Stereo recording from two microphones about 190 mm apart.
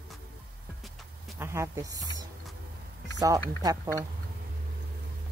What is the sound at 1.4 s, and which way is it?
Speech, 15° right (ahead or behind).